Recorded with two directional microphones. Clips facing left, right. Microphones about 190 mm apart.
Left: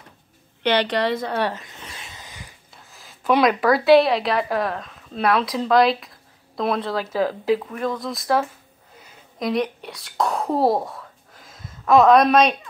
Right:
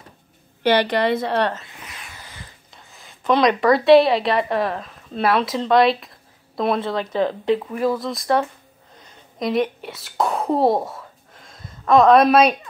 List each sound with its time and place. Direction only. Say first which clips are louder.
0.8 s a woman's voice: right 2 dB; 10° right (ahead or behind)
1.3 s speech: right 3 dB; 10° left (ahead or behind)
1.9 s a sound: even; 25° left (ahead or behind)
2.7 s a woman's voice: right 1 dB; centre (ahead or behind)
7.7 s speech: right 4 dB; 5° right (ahead or behind)
9.0 s a sound: right 1 dB; centre (ahead or behind)